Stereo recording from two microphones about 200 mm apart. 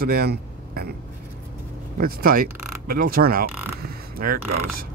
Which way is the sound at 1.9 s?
45° right (ahead or behind).